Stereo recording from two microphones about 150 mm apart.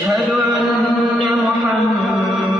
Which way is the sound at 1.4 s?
Centre (ahead or behind).